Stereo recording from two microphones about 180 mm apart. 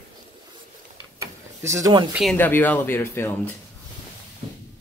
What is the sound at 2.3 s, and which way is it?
Speech, 10° left (ahead or behind).